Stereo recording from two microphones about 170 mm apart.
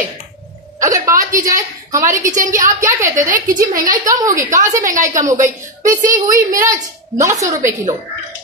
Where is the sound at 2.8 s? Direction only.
15° right (ahead or behind).